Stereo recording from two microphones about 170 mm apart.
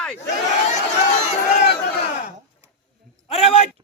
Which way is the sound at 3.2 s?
35° left (ahead or behind).